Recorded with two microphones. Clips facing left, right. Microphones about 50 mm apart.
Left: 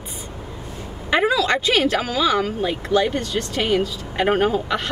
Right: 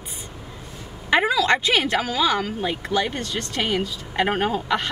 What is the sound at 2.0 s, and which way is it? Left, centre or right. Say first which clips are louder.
Speech: left 2 dB; centre.